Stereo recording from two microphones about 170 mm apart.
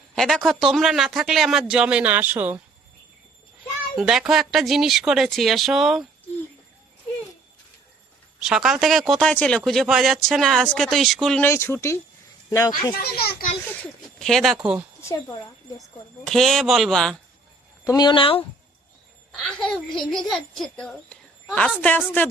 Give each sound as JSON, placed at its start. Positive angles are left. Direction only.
{"t": 0.2, "sound": "speech", "side_deg": 0}
{"t": 3.9, "sound": "speech", "side_deg": -5}
{"t": 8.4, "sound": "speech", "side_deg": -5}
{"t": 11.4, "sound": "speech", "side_deg": 15}
{"t": 13.0, "sound": "a child's voice", "side_deg": 65}
{"t": 14.0, "sound": "speech", "side_deg": 0}
{"t": 15.0, "sound": "speech", "side_deg": 20}
{"t": 16.2, "sound": "speech", "side_deg": 0}
{"t": 17.8, "sound": "speech", "side_deg": 25}
{"t": 19.3, "sound": "speech", "side_deg": 5}